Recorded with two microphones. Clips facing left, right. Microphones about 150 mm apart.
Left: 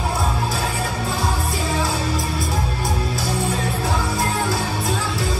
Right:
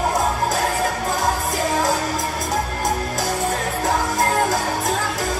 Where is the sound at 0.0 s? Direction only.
40° right (ahead or behind).